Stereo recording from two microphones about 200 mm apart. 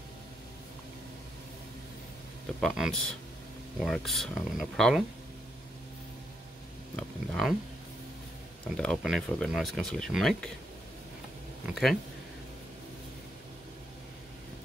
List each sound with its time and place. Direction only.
2.6 s speech: centre (ahead or behind)
7.0 s speech: centre (ahead or behind)
8.6 s speech: 5° left (ahead or behind)
11.7 s speech: centre (ahead or behind)